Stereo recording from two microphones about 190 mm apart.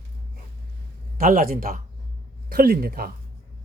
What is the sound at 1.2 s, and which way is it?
Speech, 50° right (ahead or behind).